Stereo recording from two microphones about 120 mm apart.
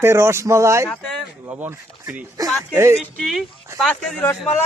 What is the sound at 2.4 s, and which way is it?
Speech, 30° right (ahead or behind).